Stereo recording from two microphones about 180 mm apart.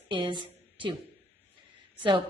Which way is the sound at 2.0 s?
30° right (ahead or behind).